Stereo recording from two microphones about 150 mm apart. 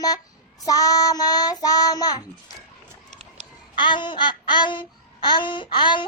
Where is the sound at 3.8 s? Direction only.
30° left (ahead or behind).